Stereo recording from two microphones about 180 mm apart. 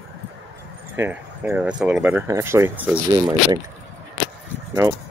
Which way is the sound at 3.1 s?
20° right (ahead or behind).